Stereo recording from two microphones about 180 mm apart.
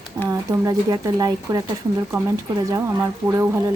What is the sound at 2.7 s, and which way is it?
Speech, 15° right (ahead or behind).